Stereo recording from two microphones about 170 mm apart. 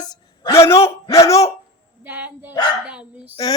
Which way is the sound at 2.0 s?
10° right (ahead or behind).